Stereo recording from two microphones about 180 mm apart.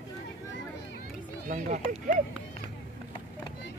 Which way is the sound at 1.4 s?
45° right (ahead or behind).